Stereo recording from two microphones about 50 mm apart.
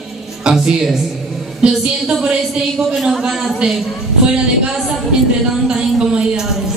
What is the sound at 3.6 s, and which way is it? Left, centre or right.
Speech, right.